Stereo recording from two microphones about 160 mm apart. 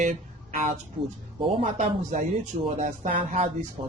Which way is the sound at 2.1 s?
45° right (ahead or behind).